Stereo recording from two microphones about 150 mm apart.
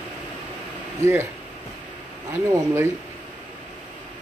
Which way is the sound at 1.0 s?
15° right (ahead or behind).